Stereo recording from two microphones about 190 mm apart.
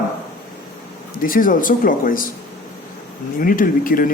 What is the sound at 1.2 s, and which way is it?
Speech, 45° left (ahead or behind).